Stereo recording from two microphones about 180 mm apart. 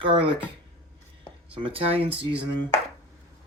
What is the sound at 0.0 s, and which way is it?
Speech, 30° right (ahead or behind).